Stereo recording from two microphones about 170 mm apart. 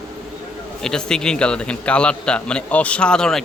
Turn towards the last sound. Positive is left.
turn(degrees=5)  # may be behind; listen again after turning